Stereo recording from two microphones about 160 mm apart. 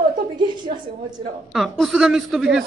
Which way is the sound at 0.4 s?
30° right (ahead or behind).